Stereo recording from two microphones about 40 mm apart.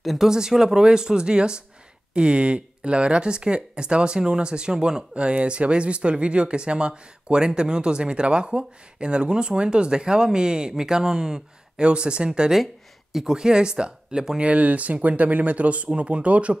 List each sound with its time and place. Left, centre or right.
0.2 s speech: centre
5.1 s speech: right
14.4 s speech: right